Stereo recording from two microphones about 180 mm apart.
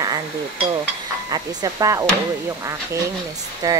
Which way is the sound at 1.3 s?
20° right (ahead or behind).